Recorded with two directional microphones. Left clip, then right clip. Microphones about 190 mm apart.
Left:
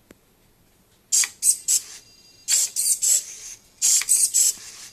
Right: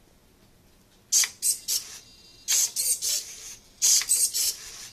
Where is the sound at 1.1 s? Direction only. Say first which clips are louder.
Left 2 dB; centre (ahead or behind).